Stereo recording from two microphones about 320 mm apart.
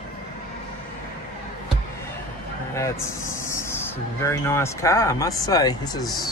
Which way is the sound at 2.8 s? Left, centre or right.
Centre.